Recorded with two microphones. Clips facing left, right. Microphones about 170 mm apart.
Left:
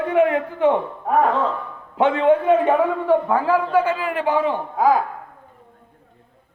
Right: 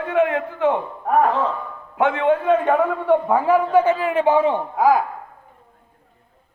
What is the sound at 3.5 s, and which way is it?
A man's voice, 20° right (ahead or behind).